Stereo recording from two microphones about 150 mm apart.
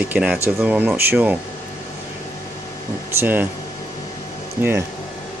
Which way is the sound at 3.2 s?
15° right (ahead or behind).